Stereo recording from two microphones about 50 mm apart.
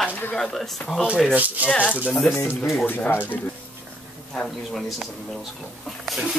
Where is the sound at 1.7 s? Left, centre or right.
Left.